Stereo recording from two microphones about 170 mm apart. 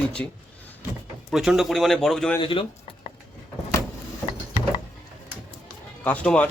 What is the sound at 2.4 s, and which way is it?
Speech, 30° left (ahead or behind).